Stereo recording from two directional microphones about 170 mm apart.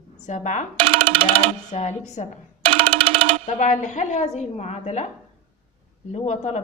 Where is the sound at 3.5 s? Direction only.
45° left (ahead or behind).